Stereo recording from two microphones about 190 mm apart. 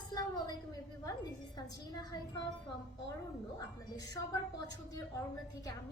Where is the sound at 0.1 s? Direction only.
20° left (ahead or behind).